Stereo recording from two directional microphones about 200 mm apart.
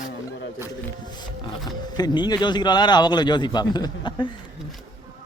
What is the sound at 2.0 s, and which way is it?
A man's voice, 20° left (ahead or behind).